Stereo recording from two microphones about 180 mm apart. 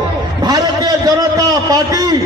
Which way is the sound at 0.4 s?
20° right (ahead or behind).